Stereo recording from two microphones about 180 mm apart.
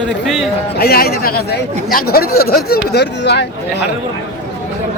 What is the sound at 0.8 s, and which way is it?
Speech, 60° left (ahead or behind).